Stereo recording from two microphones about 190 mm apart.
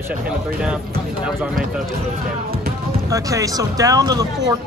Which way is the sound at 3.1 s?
15° right (ahead or behind).